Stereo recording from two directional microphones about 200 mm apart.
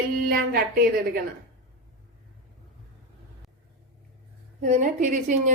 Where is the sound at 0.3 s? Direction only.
50° right (ahead or behind).